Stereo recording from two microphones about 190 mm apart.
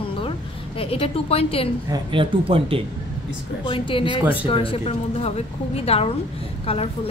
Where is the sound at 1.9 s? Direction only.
25° right (ahead or behind).